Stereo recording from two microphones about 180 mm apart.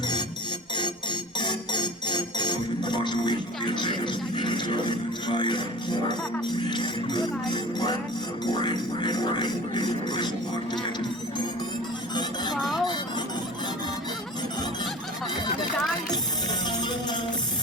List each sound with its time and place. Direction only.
1.4 s music: 25° left (ahead or behind)
12.5 s music: centre (ahead or behind)